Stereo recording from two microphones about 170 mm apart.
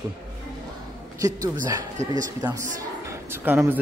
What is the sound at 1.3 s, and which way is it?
Speech, 50° right (ahead or behind).